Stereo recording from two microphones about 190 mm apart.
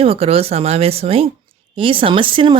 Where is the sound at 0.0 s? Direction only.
30° right (ahead or behind).